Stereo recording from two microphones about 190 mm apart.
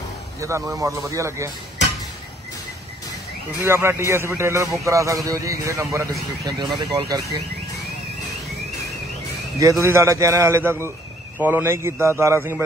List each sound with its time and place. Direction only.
0.4 s a man's voice: 15° right (ahead or behind)
3.6 s a man's voice: 15° right (ahead or behind)
9.6 s a man's voice: 15° right (ahead or behind)